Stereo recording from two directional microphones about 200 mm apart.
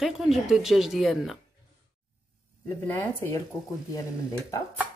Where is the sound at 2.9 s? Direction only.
10° left (ahead or behind).